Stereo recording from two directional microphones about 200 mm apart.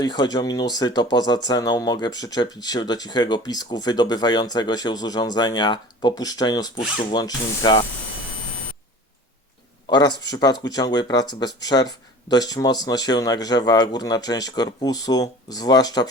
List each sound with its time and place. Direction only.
0.0 s speech: 20° left (ahead or behind)
9.9 s speech: 20° left (ahead or behind)